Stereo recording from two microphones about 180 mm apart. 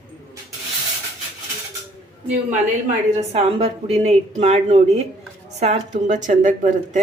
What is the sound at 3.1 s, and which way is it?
A woman's voice, 35° right (ahead or behind).